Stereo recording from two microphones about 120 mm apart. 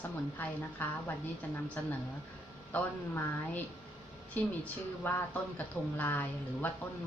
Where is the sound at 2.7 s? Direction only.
15° left (ahead or behind).